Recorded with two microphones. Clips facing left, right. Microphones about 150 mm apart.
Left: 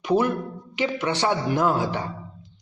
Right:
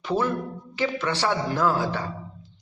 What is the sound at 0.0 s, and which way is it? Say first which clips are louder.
A man's voice: left 3 dB; 15° left (ahead or behind).